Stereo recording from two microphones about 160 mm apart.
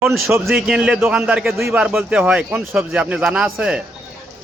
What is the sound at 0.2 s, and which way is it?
Speech, 15° right (ahead or behind).